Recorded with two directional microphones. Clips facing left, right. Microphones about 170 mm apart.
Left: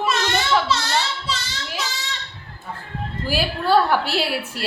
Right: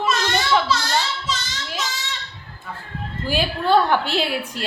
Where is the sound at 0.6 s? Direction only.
25° left (ahead or behind).